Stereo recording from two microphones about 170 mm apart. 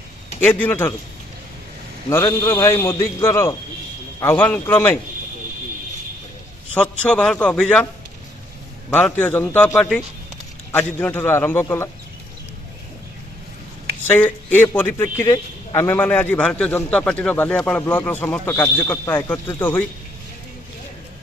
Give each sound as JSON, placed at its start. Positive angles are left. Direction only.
{"t": 0.4, "sound": "speech", "side_deg": 10}
{"t": 2.0, "sound": "speech", "side_deg": 15}
{"t": 6.7, "sound": "speech", "side_deg": 5}
{"t": 8.9, "sound": "speech", "side_deg": 10}
{"t": 14.0, "sound": "speech", "side_deg": 10}